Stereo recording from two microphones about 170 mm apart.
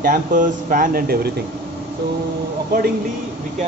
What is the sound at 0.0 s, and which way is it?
Speech, 55° right (ahead or behind).